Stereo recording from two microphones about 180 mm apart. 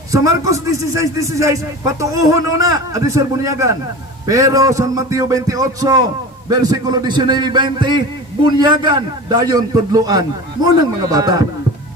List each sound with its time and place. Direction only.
0.1 s a man's voice: 15° right (ahead or behind)